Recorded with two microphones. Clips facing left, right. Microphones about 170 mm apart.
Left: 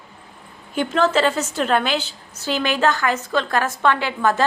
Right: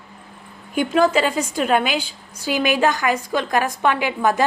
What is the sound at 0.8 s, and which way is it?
A woman's voice, 10° right (ahead or behind).